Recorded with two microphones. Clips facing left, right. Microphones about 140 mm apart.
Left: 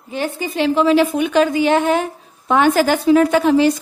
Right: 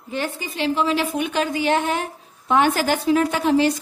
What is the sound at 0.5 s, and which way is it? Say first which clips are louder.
Speech: left 7 dB; 65° left (ahead or behind).